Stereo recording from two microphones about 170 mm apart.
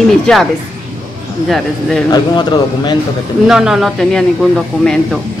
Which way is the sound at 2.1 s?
25° left (ahead or behind).